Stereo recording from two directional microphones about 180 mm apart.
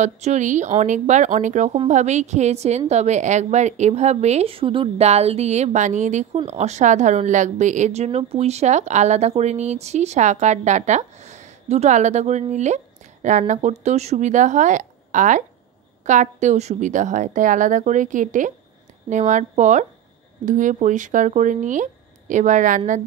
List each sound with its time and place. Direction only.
0.0 s a woman's voice: 40° right (ahead or behind)